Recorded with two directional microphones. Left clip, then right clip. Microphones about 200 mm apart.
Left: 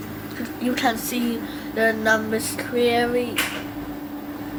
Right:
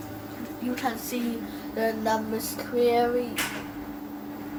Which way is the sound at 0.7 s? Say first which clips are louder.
Left 7 dB; 20° left (ahead or behind).